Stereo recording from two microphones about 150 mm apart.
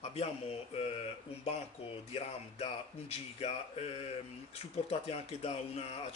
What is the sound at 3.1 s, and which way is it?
Speech, 45° left (ahead or behind).